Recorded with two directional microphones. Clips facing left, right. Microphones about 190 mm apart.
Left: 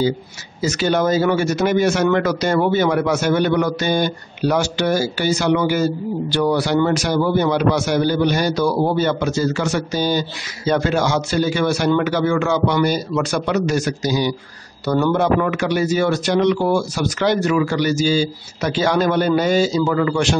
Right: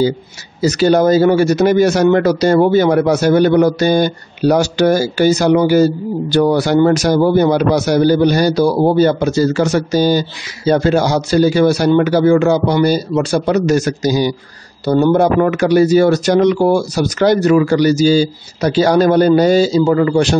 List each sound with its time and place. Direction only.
0.6 s a man's voice: 35° right (ahead or behind)